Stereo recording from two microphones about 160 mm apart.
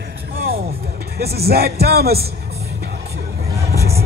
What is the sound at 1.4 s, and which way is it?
Speech, 75° right (ahead or behind).